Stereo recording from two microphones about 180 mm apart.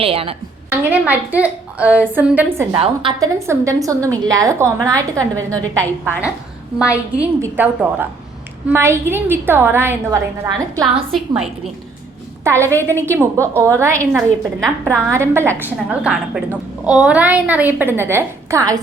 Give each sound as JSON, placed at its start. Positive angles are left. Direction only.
{"t": 0.0, "sound": "a woman's voice", "side_deg": -30}
{"t": 0.7, "sound": "a woman's voice", "side_deg": -10}
{"t": 2.7, "sound": "a woman's voice", "side_deg": -30}
{"t": 3.2, "sound": "a woman's voice", "side_deg": -15}
{"t": 11.1, "sound": "a woman's voice", "side_deg": 0}
{"t": 12.5, "sound": "a woman's voice", "side_deg": -15}